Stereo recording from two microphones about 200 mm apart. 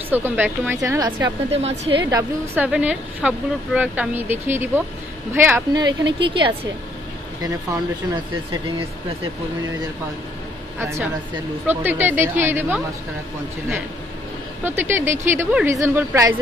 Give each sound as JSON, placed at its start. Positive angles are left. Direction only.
{"t": 0.1, "sound": "speech", "side_deg": -10}
{"t": 1.6, "sound": "a woman's voice", "side_deg": -30}
{"t": 2.0, "sound": "a woman's voice", "side_deg": -15}
{"t": 10.8, "sound": "speech", "side_deg": -15}
{"t": 14.6, "sound": "speech", "side_deg": -10}